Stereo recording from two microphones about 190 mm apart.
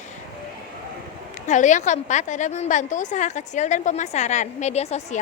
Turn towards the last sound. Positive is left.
turn(degrees=35)  # may be behind; listen again after turning